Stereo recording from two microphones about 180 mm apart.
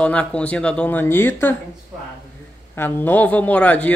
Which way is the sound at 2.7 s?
10° left (ahead or behind).